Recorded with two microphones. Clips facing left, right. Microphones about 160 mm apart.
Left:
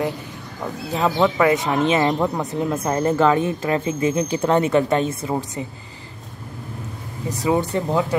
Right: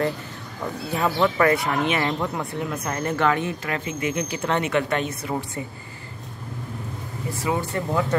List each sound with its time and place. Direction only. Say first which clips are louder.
0.9 s speech: left 3 dB; 20° left (ahead or behind)
7.4 s speech: left 5 dB; 25° left (ahead or behind)